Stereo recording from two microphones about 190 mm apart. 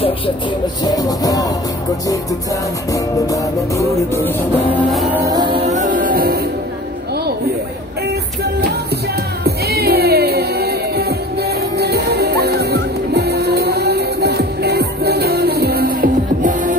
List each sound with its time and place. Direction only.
0.8 s music: 20° left (ahead or behind)
2.9 s music: 15° left (ahead or behind)
5.1 s music: 20° right (ahead or behind); by 6.4 s 55° right (ahead or behind)
9.4 s music: 55° right (ahead or behind)